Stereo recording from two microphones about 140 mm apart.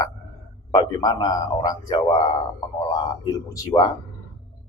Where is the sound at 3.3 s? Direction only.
25° left (ahead or behind).